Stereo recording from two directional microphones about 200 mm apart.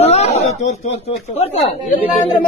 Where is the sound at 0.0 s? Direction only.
35° left (ahead or behind).